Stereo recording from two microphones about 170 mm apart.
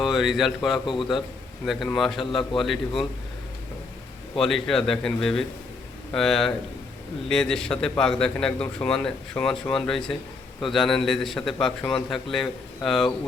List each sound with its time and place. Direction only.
0.0 s speech: centre (ahead or behind)
0.9 s a man's voice: 30° left (ahead or behind)
1.6 s a man's voice: centre (ahead or behind)
4.4 s a man's voice: centre (ahead or behind)